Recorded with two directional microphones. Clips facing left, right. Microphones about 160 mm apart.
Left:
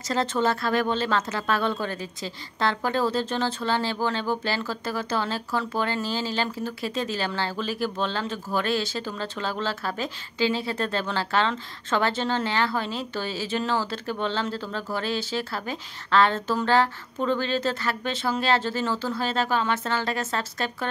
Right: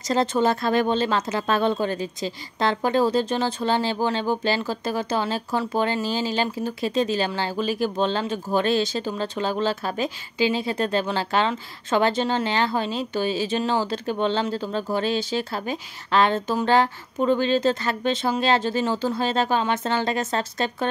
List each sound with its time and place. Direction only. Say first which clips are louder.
0.1 s speech: right 3 dB; 15° right (ahead or behind)